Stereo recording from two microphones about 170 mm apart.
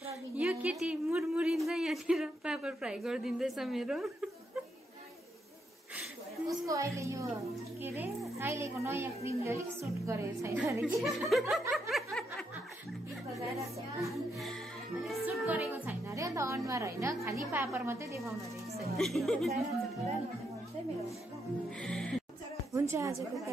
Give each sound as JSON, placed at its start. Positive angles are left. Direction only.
{"t": 0.0, "sound": "a sound", "side_deg": -5}
{"t": 6.6, "sound": "a woman's voice", "side_deg": -20}
{"t": 8.4, "sound": "a woman's voice", "side_deg": -15}
{"t": 11.0, "sound": "music", "side_deg": 0}
{"t": 11.9, "sound": "snicker", "side_deg": 5}
{"t": 13.6, "sound": "music", "side_deg": 0}
{"t": 15.7, "sound": "a woman's voice", "side_deg": -10}
{"t": 18.9, "sound": "music", "side_deg": 0}
{"t": 21.6, "sound": "music", "side_deg": 5}
{"t": 22.7, "sound": "a woman's voice", "side_deg": -15}